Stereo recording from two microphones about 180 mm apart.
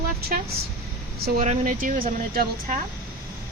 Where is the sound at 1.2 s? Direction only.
45° right (ahead or behind).